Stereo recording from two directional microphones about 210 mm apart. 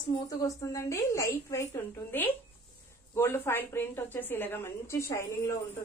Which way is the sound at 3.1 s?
10° left (ahead or behind).